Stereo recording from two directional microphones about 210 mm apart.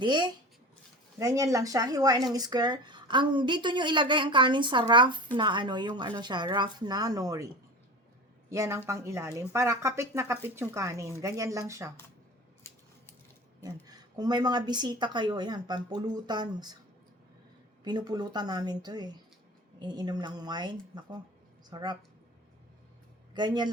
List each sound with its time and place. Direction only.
0.0 s speech: 20° right (ahead or behind)
13.8 s speech: 20° right (ahead or behind)
17.8 s speech: 20° right (ahead or behind)
23.3 s speech: 20° right (ahead or behind)